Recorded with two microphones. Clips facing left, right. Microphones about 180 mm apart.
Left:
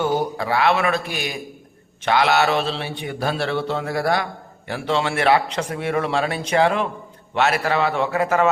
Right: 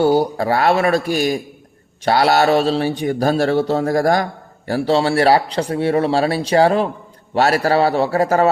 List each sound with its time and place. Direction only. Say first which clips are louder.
0.0 s mantra: right 7 dB; 35° right (ahead or behind)